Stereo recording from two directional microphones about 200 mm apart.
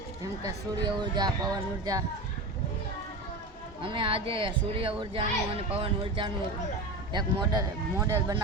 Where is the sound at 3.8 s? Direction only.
25° right (ahead or behind).